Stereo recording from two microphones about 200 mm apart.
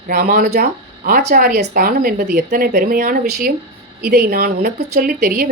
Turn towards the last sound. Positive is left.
turn(degrees=-50)  # may be behind; listen again after turning